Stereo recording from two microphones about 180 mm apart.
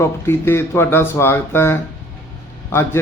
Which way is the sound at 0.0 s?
15° left (ahead or behind).